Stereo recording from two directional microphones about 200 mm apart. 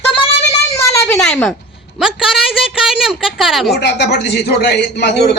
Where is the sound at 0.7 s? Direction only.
15° left (ahead or behind).